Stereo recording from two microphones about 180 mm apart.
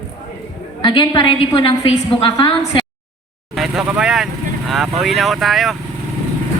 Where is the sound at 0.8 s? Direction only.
25° left (ahead or behind).